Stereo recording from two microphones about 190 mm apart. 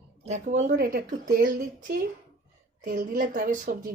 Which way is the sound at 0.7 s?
50° right (ahead or behind).